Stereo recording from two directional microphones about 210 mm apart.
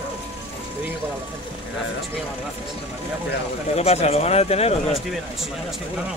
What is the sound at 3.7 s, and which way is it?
Speech, 30° left (ahead or behind).